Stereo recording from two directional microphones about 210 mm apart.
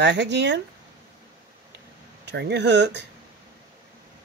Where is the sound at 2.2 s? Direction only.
55° right (ahead or behind).